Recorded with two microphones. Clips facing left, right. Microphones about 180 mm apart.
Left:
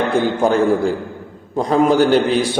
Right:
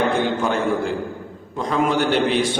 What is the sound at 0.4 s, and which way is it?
A man's voice, 35° left (ahead or behind).